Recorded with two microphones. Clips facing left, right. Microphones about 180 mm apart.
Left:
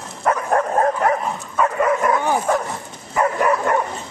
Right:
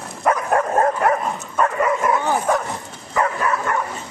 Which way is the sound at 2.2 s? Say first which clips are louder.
Left 1 dB; 15° left (ahead or behind).